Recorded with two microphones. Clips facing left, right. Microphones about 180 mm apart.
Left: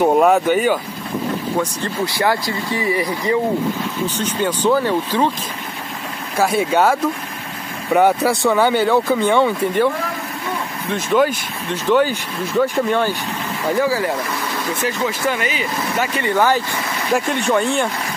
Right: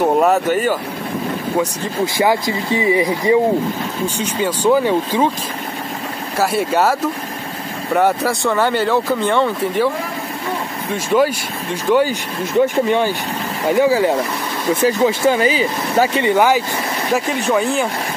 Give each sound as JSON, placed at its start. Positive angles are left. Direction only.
{"t": 0.0, "sound": "speech", "side_deg": 0}
{"t": 2.1, "sound": "speech", "side_deg": -15}
{"t": 6.3, "sound": "speech", "side_deg": -5}
{"t": 10.9, "sound": "speech", "side_deg": -5}
{"t": 16.2, "sound": "speech", "side_deg": -15}
{"t": 17.1, "sound": "speech", "side_deg": 0}